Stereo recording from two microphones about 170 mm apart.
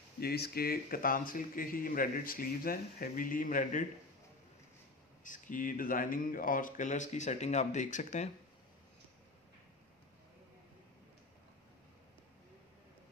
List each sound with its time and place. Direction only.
0.2 s speech: 65° left (ahead or behind); by 3.8 s 50° left (ahead or behind)
5.2 s speech: 50° left (ahead or behind)